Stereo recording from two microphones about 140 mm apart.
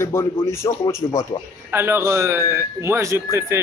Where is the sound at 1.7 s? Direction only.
15° right (ahead or behind).